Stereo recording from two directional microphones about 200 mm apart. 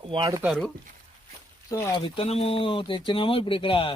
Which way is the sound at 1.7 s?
15° left (ahead or behind).